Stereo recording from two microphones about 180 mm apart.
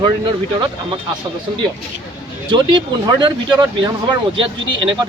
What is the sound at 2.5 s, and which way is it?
Speech, 25° right (ahead or behind).